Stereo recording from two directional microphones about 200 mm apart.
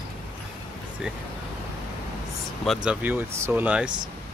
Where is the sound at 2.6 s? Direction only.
Centre (ahead or behind).